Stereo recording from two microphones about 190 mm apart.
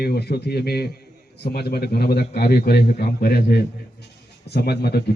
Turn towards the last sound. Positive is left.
turn(degrees=60)  # may be behind; listen again after turning